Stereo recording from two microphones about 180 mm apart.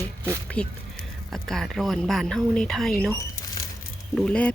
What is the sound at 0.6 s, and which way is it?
Speech, 5° left (ahead or behind).